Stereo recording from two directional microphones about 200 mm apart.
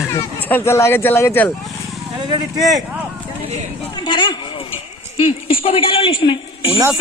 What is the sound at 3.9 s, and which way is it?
A woman's voice, 20° left (ahead or behind).